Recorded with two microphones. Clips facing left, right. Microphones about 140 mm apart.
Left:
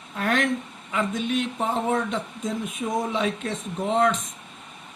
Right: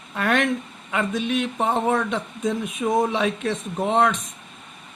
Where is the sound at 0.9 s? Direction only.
75° right (ahead or behind).